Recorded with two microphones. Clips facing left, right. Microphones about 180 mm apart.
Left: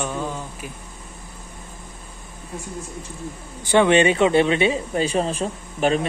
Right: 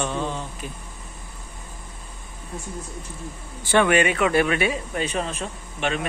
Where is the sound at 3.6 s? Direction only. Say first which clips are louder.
Left 3 dB; 15° left (ahead or behind); by 6.0 s 35° left (ahead or behind).